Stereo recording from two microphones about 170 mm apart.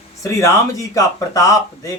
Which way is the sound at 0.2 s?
20° left (ahead or behind).